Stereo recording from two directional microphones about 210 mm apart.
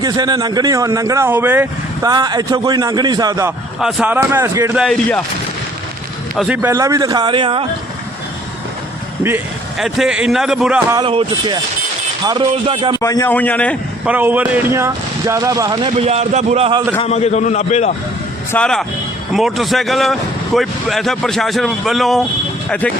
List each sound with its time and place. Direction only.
0.0 s speech: 20° right (ahead or behind)
3.8 s speech: centre (ahead or behind)
4.8 s speech: 5° left (ahead or behind)
6.3 s speech: 5° right (ahead or behind); by 7.7 s 25° right (ahead or behind)
9.2 s speech: 5° right (ahead or behind)
10.9 s speech: 25° right (ahead or behind)
13.0 s a man's voice: 15° left (ahead or behind)
14.0 s speech: 10° right (ahead or behind)
15.9 s a man's voice: 30° right (ahead or behind)
17.0 s a man's voice: 30° left (ahead or behind)
18.5 s speech: 5° left (ahead or behind)